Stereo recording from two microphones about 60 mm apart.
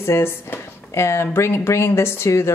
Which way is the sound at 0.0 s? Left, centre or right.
Left.